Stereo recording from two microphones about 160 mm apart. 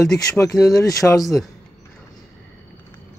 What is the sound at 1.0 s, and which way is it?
Speech, 5° left (ahead or behind).